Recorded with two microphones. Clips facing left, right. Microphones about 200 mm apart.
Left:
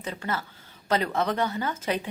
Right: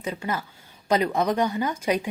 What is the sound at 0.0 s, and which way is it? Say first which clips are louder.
Speech: right 3 dB; 10° right (ahead or behind).